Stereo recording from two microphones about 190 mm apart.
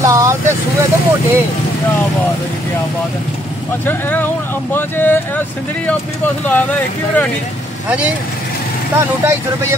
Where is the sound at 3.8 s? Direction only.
10° left (ahead or behind).